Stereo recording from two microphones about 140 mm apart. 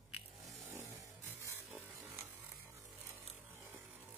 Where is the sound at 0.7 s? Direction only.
15° right (ahead or behind).